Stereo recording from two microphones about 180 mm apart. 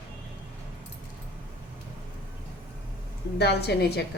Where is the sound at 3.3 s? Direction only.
65° left (ahead or behind).